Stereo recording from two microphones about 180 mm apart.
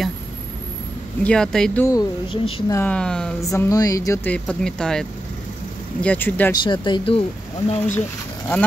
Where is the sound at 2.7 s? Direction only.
10° left (ahead or behind).